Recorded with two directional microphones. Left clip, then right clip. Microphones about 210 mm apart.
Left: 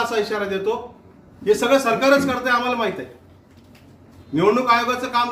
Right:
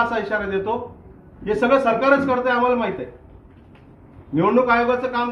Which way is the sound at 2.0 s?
20° left (ahead or behind).